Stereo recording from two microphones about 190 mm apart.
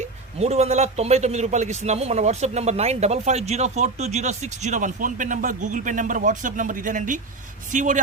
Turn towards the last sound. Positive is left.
turn(degrees=-40)  # may be behind; listen again after turning